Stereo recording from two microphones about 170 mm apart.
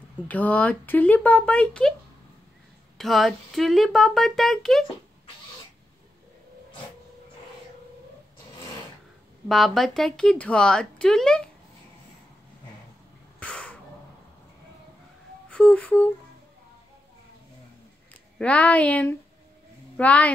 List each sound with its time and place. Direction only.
0.3 s speech: 10° left (ahead or behind)
3.0 s speech: centre (ahead or behind)
9.5 s speech: centre (ahead or behind)
13.4 s throat clearing: 5° left (ahead or behind)
15.5 s speech: 5° left (ahead or behind)
18.4 s speech: 10° left (ahead or behind)